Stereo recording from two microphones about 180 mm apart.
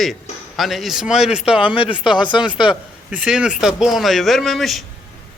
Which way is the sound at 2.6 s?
5° right (ahead or behind).